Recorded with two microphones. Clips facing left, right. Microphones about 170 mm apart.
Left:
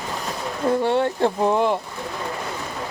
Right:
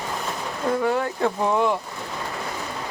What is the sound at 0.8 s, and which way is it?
Speech, 30° left (ahead or behind).